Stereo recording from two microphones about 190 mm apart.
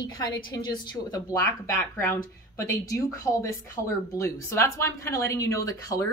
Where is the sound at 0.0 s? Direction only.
20° left (ahead or behind).